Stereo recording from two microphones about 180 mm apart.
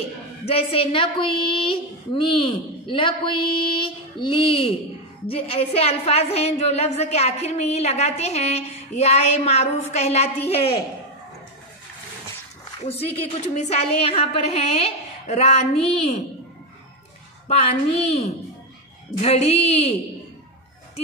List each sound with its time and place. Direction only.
0.5 s a woman's voice: 30° left (ahead or behind)
12.8 s a woman's voice: 35° left (ahead or behind)
17.5 s a woman's voice: 35° left (ahead or behind)